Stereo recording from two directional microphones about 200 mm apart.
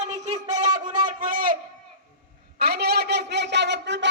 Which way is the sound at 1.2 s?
45° right (ahead or behind).